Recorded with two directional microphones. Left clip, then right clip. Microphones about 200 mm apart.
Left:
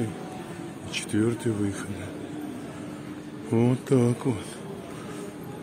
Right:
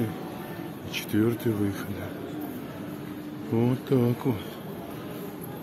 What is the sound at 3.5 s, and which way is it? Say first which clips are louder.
Speech: left 2 dB; 20° left (ahead or behind).